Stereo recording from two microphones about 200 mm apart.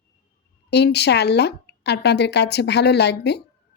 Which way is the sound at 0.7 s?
55° left (ahead or behind).